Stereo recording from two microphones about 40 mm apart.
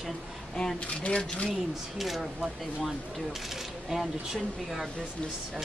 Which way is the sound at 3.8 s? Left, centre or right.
Centre.